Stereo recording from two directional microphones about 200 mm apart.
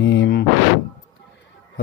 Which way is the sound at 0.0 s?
65° left (ahead or behind).